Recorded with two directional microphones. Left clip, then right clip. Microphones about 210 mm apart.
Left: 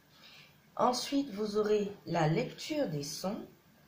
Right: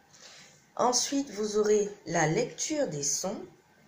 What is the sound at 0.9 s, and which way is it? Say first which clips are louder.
Speech: right 4 dB; 30° right (ahead or behind).